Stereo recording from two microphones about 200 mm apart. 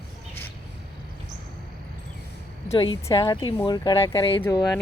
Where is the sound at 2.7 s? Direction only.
25° left (ahead or behind).